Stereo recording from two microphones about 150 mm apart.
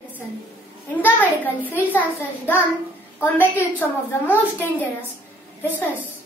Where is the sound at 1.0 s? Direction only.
10° left (ahead or behind).